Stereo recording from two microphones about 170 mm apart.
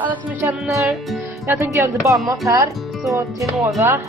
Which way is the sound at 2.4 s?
20° right (ahead or behind).